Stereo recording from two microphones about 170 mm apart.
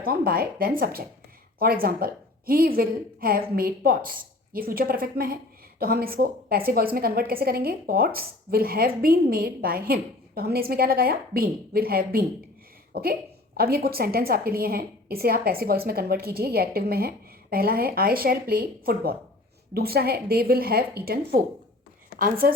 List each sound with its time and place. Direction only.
0.0 s a woman's voice: 60° right (ahead or behind)